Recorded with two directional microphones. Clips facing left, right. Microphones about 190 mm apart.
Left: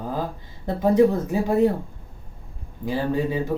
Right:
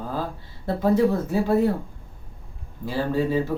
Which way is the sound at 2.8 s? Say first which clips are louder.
Even; 15° left (ahead or behind).